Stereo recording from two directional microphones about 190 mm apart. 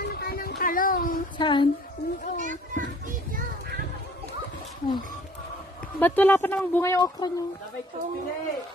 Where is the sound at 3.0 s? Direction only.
50° right (ahead or behind).